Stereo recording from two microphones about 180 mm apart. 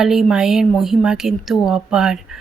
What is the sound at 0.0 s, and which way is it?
A woman's voice, centre (ahead or behind).